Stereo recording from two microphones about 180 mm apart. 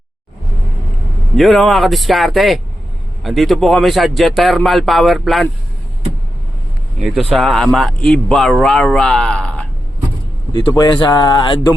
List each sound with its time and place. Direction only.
1.4 s speech: centre (ahead or behind)
7.0 s speech: centre (ahead or behind)
10.5 s speech: 25° left (ahead or behind)